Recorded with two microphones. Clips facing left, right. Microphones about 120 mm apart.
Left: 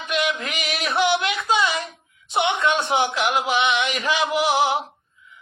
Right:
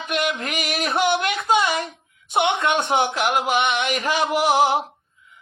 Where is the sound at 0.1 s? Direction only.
45° right (ahead or behind).